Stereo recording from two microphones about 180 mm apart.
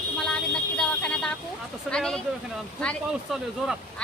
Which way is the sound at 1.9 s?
5° left (ahead or behind).